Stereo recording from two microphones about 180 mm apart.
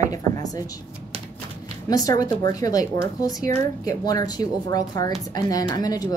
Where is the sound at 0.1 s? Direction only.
20° left (ahead or behind).